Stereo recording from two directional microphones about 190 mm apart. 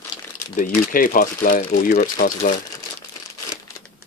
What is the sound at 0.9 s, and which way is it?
Speech, 45° left (ahead or behind).